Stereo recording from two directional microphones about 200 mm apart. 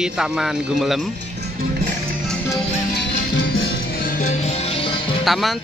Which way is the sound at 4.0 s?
40° left (ahead or behind).